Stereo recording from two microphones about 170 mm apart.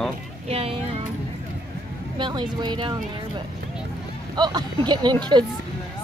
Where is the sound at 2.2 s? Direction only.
25° right (ahead or behind).